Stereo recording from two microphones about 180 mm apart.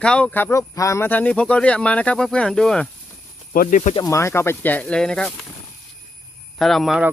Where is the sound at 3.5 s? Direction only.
45° left (ahead or behind).